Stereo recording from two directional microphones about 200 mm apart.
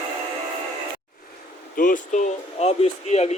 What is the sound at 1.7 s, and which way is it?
Speech, 40° left (ahead or behind).